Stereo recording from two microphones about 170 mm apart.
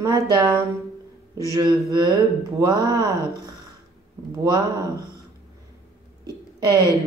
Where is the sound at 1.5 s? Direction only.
20° right (ahead or behind).